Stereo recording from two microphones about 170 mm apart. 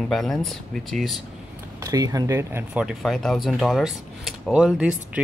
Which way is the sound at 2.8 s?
Centre (ahead or behind).